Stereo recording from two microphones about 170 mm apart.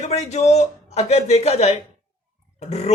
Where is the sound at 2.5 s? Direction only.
40° left (ahead or behind).